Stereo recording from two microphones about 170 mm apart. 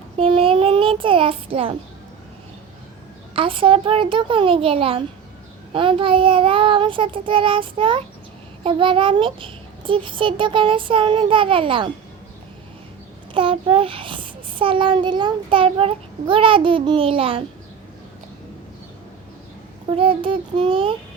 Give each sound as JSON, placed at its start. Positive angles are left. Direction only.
{"t": 0.2, "sound": "child singing", "side_deg": -30}
{"t": 3.3, "sound": "a child's voice", "side_deg": -30}
{"t": 13.3, "sound": "a child's voice", "side_deg": -30}
{"t": 20.0, "sound": "child singing", "side_deg": -30}